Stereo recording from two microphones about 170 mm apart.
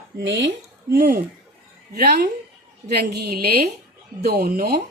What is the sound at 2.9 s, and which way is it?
A woman's voice, 70° right (ahead or behind).